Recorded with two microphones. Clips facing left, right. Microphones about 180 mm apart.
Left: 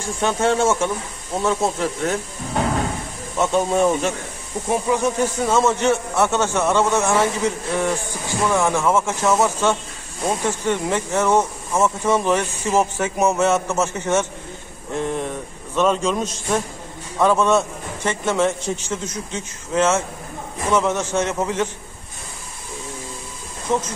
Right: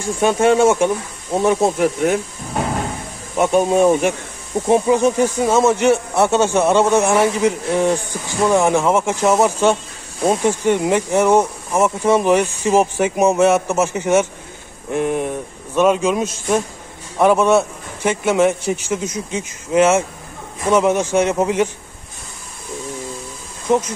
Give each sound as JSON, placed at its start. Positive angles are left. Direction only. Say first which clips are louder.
{"t": 0.0, "sound": "speech", "louder": "right 5 dB", "side_deg": -15}
{"t": 3.3, "sound": "speech", "louder": "right 4 dB", "side_deg": -15}